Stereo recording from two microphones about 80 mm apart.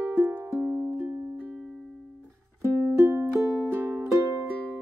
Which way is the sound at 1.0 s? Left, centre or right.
Right.